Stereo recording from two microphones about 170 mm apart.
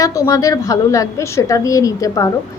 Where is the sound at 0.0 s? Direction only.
20° left (ahead or behind).